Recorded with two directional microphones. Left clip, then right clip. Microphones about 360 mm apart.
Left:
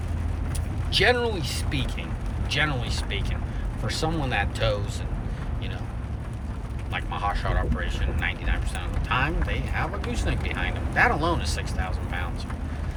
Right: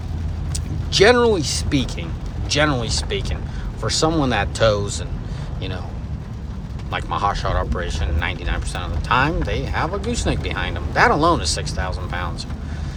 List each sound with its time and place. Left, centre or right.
0.9 s speech: centre
6.9 s speech: centre